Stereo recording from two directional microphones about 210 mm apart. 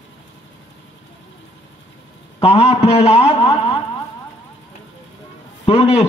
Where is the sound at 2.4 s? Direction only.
30° left (ahead or behind).